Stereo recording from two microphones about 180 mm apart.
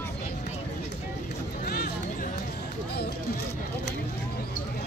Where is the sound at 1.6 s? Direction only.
55° left (ahead or behind).